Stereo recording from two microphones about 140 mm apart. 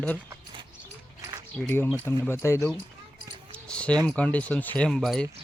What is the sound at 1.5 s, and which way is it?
Speech, 15° left (ahead or behind).